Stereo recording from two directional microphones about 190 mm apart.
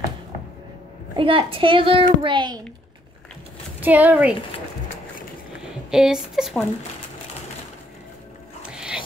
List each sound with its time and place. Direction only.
1.1 s a child's voice: 25° right (ahead or behind)
3.8 s a woman's voice: 10° right (ahead or behind)
5.9 s speech: 5° right (ahead or behind)
8.6 s dog: 5° right (ahead or behind)